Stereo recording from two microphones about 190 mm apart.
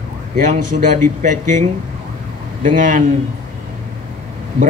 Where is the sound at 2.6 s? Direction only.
45° right (ahead or behind).